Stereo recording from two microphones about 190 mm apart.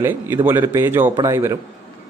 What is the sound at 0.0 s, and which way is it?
Speech, 10° right (ahead or behind).